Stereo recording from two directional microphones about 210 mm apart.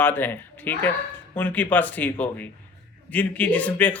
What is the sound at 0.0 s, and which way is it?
Speech, 10° left (ahead or behind).